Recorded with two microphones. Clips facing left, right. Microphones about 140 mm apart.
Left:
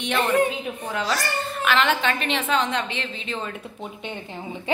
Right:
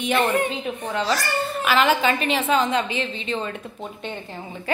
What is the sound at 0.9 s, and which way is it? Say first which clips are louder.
Speech: right 2 dB; centre (ahead or behind).